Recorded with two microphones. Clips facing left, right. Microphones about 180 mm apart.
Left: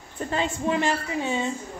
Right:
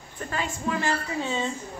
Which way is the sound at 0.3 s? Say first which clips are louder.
Left 4 dB; 25° left (ahead or behind).